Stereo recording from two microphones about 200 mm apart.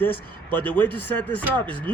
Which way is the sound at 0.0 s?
10° left (ahead or behind).